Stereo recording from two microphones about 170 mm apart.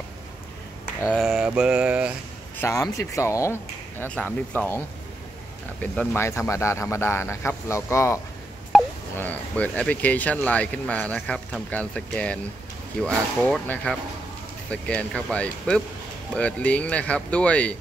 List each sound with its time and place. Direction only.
1.0 s mantra: 5° right (ahead or behind)
2.6 s speech: 20° left (ahead or behind)
8.7 s telephone dialing: centre (ahead or behind)
9.2 s speech: 10° left (ahead or behind)